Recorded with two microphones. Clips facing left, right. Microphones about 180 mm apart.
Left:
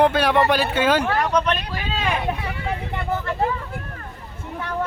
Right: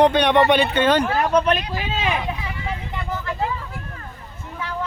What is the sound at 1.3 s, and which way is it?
Speech, 25° right (ahead or behind).